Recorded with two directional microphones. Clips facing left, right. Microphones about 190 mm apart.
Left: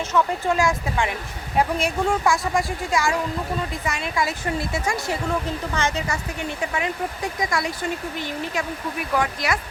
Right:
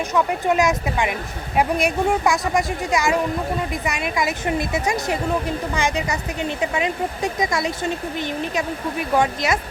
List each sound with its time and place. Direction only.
0.1 s speech: 20° right (ahead or behind)